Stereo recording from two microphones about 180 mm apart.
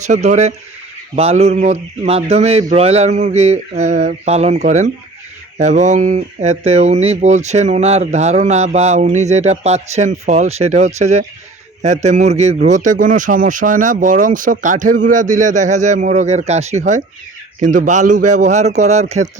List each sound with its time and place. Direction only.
0.1 s speech: 40° right (ahead or behind)